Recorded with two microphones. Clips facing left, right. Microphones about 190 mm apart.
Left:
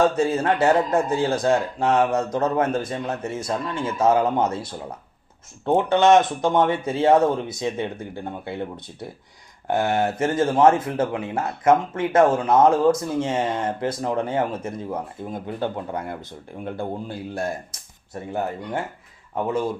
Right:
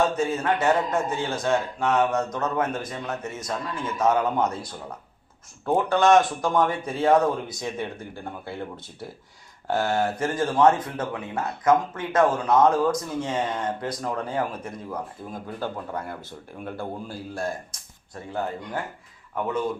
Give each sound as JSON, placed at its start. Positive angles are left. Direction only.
{"t": 0.2, "sound": "speech", "side_deg": 30}
{"t": 18.1, "sound": "speech", "side_deg": 25}